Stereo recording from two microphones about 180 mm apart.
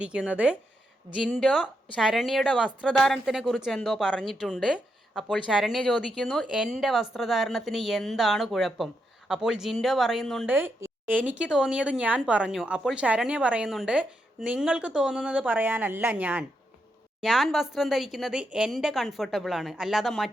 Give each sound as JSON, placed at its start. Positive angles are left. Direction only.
{"t": 0.0, "sound": "speech", "side_deg": -5}
{"t": 10.4, "sound": "speech", "side_deg": -10}
{"t": 11.0, "sound": "speech", "side_deg": -45}
{"t": 11.3, "sound": "speech", "side_deg": -5}